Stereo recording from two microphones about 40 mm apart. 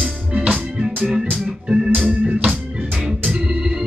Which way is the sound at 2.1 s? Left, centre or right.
Right.